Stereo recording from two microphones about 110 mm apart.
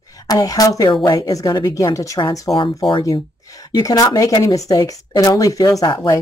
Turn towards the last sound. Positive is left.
turn(degrees=45)  # may be behind; listen again after turning